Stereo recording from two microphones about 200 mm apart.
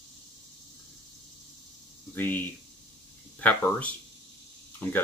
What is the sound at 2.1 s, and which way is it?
Speech, 10° left (ahead or behind).